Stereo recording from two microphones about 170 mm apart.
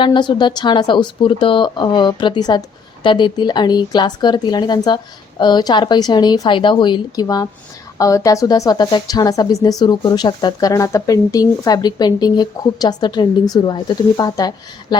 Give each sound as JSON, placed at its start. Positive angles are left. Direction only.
{"t": 0.0, "sound": "a woman's voice", "side_deg": 25}